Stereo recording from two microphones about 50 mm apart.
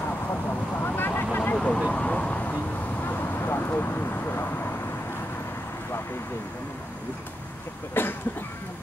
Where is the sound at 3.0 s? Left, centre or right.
Left.